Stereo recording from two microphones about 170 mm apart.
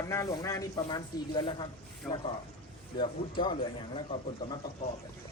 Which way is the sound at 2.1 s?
10° left (ahead or behind).